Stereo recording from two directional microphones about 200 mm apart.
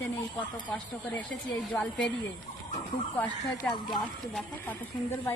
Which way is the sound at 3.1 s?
10° left (ahead or behind).